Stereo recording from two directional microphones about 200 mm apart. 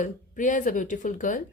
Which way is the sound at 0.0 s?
40° left (ahead or behind).